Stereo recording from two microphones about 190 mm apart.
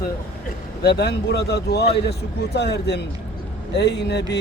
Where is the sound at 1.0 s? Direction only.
55° left (ahead or behind).